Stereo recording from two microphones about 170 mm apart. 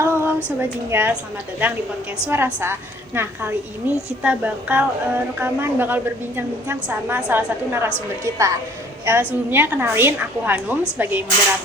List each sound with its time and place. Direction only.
0.0 s a sound: 15° right (ahead or behind)
0.6 s a woman's voice: 10° right (ahead or behind)
2.2 s a woman's voice: 10° right (ahead or behind)